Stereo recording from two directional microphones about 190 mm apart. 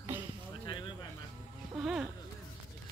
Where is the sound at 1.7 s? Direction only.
5° right (ahead or behind).